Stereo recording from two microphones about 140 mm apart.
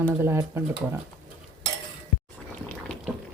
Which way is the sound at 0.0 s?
15° right (ahead or behind).